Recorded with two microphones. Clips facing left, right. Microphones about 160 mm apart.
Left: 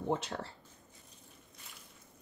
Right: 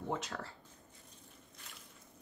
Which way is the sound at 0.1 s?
30° left (ahead or behind).